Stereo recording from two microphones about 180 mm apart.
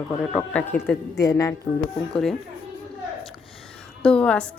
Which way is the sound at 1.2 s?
20° left (ahead or behind).